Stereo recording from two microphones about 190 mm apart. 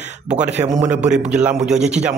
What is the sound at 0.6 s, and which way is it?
Speech, 20° right (ahead or behind).